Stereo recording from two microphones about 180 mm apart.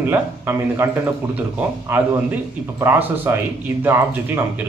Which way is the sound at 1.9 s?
10° right (ahead or behind).